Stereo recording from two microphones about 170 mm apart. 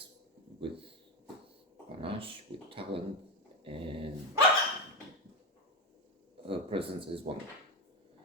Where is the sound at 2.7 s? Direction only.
30° right (ahead or behind).